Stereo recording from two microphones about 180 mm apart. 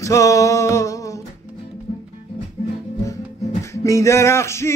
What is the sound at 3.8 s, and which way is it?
Music, 15° left (ahead or behind).